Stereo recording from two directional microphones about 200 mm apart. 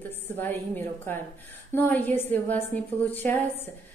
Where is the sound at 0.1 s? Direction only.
10° left (ahead or behind).